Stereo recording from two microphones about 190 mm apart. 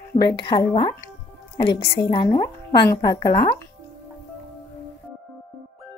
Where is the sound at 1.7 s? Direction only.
60° left (ahead or behind).